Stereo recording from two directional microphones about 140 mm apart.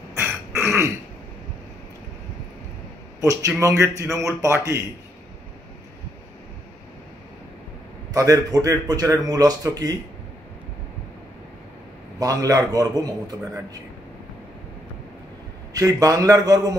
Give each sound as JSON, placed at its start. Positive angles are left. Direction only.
{"t": 0.1, "sound": "throat clearing", "side_deg": -20}
{"t": 3.2, "sound": "speech", "side_deg": -25}
{"t": 8.1, "sound": "speech", "side_deg": -25}
{"t": 12.2, "sound": "speech", "side_deg": -25}
{"t": 15.7, "sound": "speech", "side_deg": -25}